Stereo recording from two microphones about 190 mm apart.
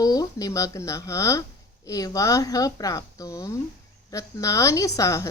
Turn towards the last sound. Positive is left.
turn(degrees=15)  # may be behind; listen again after turning